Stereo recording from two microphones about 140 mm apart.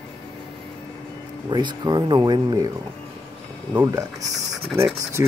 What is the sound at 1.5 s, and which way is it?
Speech, 30° right (ahead or behind).